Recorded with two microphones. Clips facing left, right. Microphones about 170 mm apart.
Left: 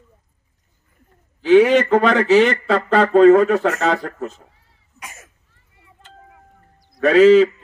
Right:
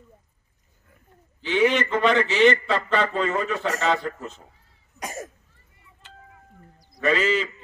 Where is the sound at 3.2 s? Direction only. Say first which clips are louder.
Left 15 dB; 60° left (ahead or behind).